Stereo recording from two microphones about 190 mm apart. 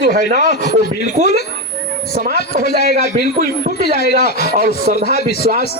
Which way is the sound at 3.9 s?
60° left (ahead or behind).